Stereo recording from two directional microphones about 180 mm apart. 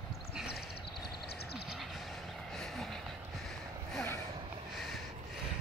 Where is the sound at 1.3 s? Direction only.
65° left (ahead or behind).